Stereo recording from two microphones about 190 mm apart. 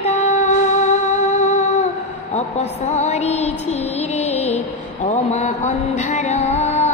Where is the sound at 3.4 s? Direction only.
35° left (ahead or behind).